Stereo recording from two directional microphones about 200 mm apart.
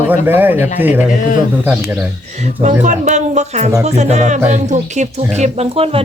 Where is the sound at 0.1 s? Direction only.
10° right (ahead or behind).